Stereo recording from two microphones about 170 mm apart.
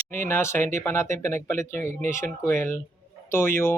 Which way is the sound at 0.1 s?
15° left (ahead or behind).